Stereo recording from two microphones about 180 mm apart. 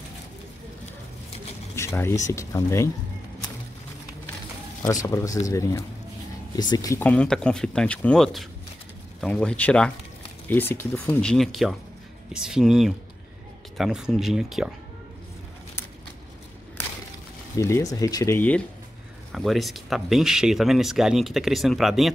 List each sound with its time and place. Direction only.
1.8 s speech: 15° left (ahead or behind)
4.8 s speech: 15° left (ahead or behind)
7.1 s speech: 5° left (ahead or behind)
17.6 s speech: 15° left (ahead or behind)
19.3 s speech: centre (ahead or behind)